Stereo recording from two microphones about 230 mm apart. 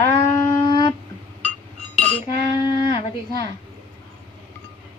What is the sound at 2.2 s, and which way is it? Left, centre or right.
Music, centre.